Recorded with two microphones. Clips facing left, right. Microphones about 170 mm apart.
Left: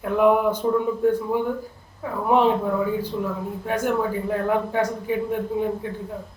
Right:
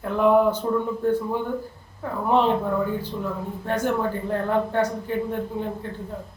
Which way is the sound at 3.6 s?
10° left (ahead or behind).